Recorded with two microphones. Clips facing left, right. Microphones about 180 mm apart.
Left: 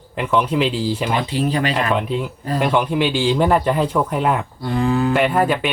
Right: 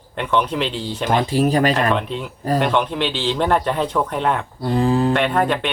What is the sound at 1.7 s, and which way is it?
Speech, 5° left (ahead or behind).